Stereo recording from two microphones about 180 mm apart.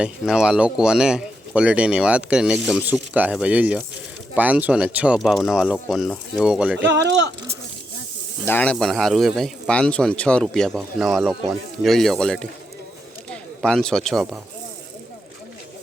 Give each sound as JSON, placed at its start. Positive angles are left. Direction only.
{"t": 0.0, "sound": "speech", "side_deg": -5}
{"t": 7.0, "sound": "speech", "side_deg": -75}
{"t": 8.4, "sound": "a man's voice", "side_deg": 10}